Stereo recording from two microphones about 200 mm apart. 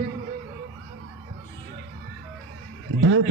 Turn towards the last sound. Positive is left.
turn(degrees=-90)